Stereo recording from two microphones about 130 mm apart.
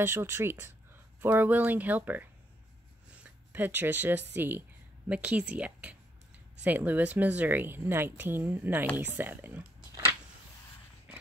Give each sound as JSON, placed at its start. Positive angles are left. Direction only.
{"t": 0.0, "sound": "a woman's voice", "side_deg": -20}
{"t": 3.3, "sound": "a woman's voice", "side_deg": -15}